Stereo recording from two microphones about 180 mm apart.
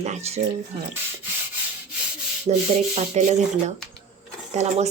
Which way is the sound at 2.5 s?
40° right (ahead or behind).